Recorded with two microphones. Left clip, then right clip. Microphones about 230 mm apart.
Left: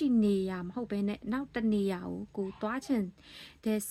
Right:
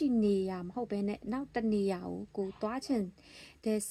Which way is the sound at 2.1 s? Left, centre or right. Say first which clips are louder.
Even; left.